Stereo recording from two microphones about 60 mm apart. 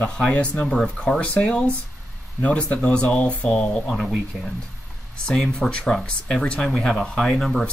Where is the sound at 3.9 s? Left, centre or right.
Centre.